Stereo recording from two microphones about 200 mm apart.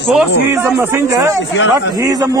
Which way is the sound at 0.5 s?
10° right (ahead or behind).